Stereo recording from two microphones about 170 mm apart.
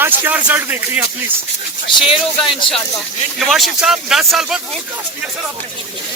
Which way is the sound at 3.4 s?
Centre (ahead or behind).